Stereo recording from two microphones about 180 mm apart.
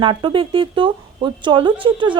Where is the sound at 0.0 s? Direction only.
25° right (ahead or behind).